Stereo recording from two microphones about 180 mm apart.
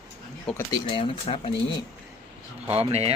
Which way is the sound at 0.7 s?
30° left (ahead or behind).